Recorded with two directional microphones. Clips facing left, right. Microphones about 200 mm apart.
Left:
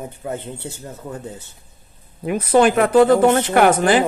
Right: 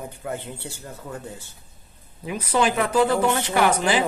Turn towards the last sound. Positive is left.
turn(degrees=55)  # may be behind; listen again after turning